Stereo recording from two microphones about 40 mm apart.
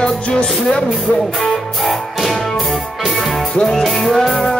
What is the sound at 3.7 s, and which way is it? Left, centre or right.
Music, centre.